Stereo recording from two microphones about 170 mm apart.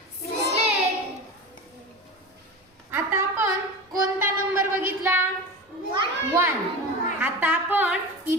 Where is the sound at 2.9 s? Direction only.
15° right (ahead or behind).